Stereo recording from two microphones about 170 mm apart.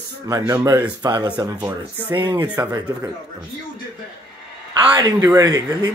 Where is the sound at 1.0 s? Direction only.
25° right (ahead or behind).